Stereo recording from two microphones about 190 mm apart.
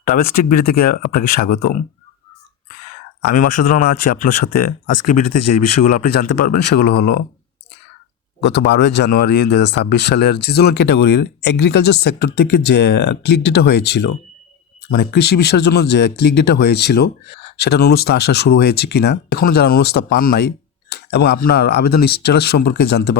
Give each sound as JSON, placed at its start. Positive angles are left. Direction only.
{"t": 0.0, "sound": "speech", "side_deg": 45}
{"t": 3.2, "sound": "speech", "side_deg": 50}
{"t": 8.5, "sound": "speech", "side_deg": 65}